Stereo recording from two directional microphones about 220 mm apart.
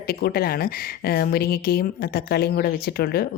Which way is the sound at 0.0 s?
45° left (ahead or behind).